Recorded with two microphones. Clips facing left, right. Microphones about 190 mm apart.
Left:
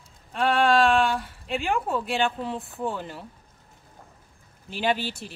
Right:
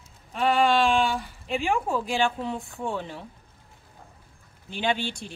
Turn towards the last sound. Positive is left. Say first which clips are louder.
# left 1 dB
turn(degrees=5)  # may be behind; listen again after turning